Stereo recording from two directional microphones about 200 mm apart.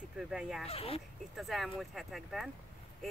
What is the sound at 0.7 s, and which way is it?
Speech, 30° left (ahead or behind).